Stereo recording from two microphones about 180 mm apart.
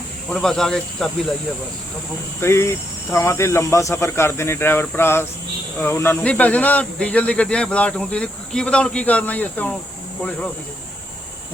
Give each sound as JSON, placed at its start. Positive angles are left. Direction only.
{"t": 0.3, "sound": "speech", "side_deg": 0}
{"t": 2.4, "sound": "speech", "side_deg": 15}